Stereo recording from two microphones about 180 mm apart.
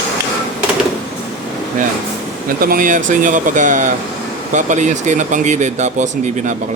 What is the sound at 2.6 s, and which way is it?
Speech, 50° right (ahead or behind).